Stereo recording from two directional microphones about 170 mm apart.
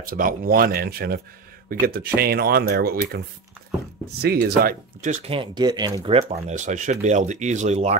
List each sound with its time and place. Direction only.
0.0 s speech: 55° right (ahead or behind)
4.2 s speech: 70° right (ahead or behind)
5.0 s speech: 45° right (ahead or behind)
5.3 s speech: 25° right (ahead or behind)
6.5 s speech: 45° right (ahead or behind)